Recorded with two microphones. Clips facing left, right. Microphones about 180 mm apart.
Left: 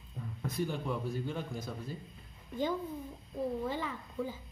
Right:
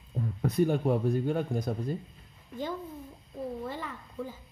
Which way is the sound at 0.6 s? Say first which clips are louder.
Right 9 dB; 55° right (ahead or behind).